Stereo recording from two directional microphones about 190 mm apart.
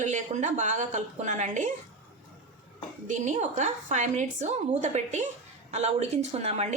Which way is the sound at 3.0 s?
40° right (ahead or behind).